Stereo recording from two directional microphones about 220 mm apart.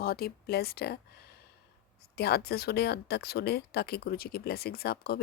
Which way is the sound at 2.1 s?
45° left (ahead or behind).